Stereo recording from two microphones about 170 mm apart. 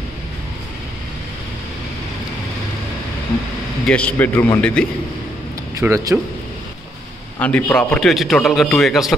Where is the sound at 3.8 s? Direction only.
10° left (ahead or behind).